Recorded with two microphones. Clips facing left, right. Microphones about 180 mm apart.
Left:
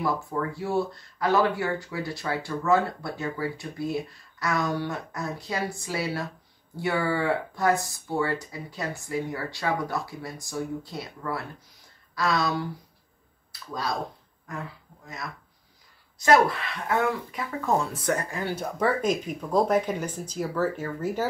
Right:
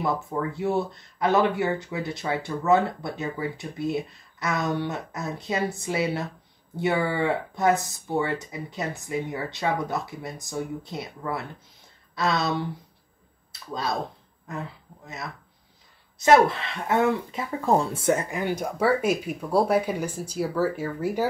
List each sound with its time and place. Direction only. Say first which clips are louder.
0.0 s speech: right 1 dB; 20° right (ahead or behind)
13.5 s a sound: right 2 dB; 25° right (ahead or behind)
14.5 s speech: right 2 dB; 25° right (ahead or behind)